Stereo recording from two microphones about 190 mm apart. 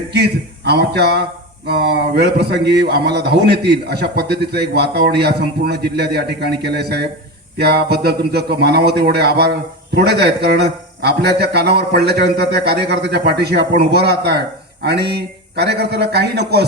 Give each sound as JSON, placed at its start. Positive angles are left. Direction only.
{"t": 0.1, "sound": "a man's voice", "side_deg": -60}